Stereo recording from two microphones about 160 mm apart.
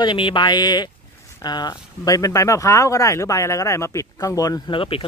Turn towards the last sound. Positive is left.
turn(degrees=35)  # may be behind; listen again after turning